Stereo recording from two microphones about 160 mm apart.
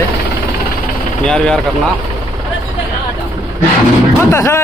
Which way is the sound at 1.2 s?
5° left (ahead or behind).